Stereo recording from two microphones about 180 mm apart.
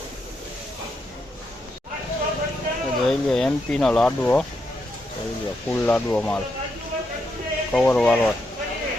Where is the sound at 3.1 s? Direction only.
Centre (ahead or behind).